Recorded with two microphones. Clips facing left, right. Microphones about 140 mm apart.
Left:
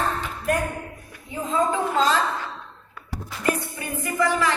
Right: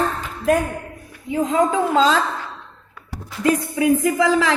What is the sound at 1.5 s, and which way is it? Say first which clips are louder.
Speech: right 3 dB; 90° right.